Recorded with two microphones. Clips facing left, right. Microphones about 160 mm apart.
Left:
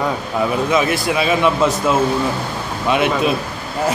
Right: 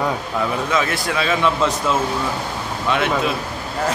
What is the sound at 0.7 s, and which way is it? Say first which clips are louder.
A man's voice: left 4 dB; 15° left (ahead or behind).